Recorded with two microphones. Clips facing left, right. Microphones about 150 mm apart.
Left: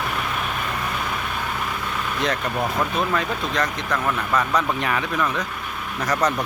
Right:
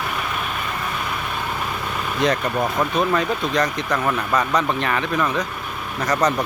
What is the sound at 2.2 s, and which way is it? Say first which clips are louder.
Speech: right 5 dB; centre (ahead or behind).